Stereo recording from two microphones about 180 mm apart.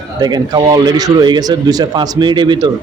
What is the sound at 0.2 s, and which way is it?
A man's voice, 20° right (ahead or behind).